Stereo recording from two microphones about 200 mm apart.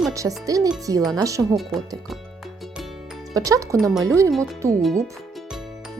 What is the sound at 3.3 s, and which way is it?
Speech, 15° right (ahead or behind).